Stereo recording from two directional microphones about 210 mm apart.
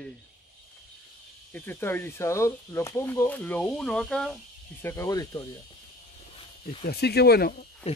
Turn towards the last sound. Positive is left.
turn(degrees=45)  # may be behind; listen again after turning